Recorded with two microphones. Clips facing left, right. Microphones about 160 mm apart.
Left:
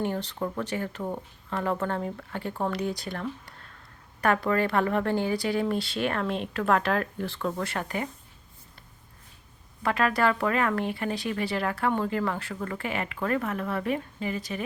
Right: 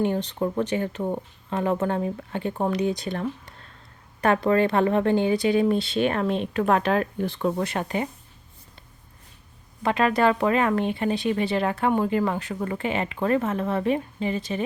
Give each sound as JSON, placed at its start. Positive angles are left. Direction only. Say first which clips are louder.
{"t": 0.0, "sound": "a woman's voice", "louder": "right 5 dB", "side_deg": -20}
{"t": 9.8, "sound": "a woman's voice", "louder": "right 4 dB", "side_deg": -20}